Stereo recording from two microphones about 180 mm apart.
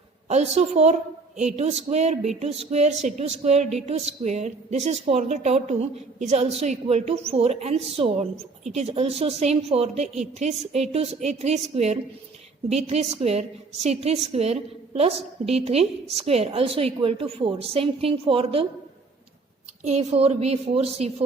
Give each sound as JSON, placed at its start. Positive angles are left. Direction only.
{"t": 0.3, "sound": "a woman's voice", "side_deg": -40}
{"t": 19.8, "sound": "a woman's voice", "side_deg": -35}